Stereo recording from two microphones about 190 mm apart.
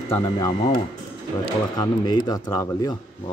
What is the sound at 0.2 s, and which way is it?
Speech, 20° left (ahead or behind).